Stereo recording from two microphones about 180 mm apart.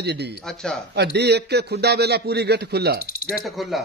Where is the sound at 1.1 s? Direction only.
70° right (ahead or behind).